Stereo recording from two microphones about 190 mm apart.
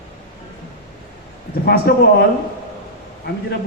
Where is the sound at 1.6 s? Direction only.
55° left (ahead or behind).